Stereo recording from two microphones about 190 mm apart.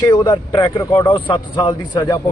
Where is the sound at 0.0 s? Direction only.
20° left (ahead or behind).